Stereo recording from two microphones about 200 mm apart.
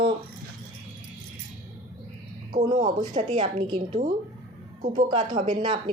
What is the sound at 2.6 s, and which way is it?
Speech, 20° right (ahead or behind).